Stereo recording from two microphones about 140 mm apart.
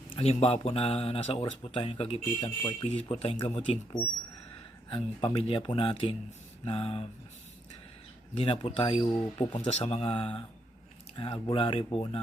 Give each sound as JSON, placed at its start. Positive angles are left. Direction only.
{"t": 0.2, "sound": "speech", "side_deg": 45}
{"t": 4.9, "sound": "speech", "side_deg": 40}
{"t": 8.4, "sound": "speech", "side_deg": 40}